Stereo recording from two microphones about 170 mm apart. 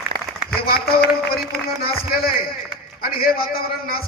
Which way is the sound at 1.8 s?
60° left (ahead or behind).